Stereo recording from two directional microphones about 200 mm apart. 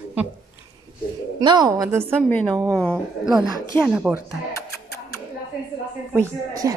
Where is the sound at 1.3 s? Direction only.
20° right (ahead or behind).